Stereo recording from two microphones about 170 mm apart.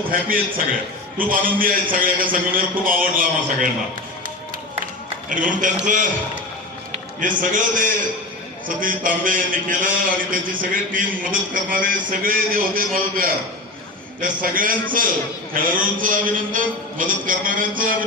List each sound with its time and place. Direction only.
0.1 s a man's voice: 55° right (ahead or behind)
5.3 s a man's voice: 50° right (ahead or behind)
7.2 s a man's voice: 50° right (ahead or behind)